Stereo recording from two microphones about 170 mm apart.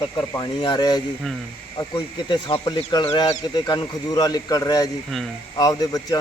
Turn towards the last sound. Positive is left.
turn(degrees=20)  # may be behind; listen again after turning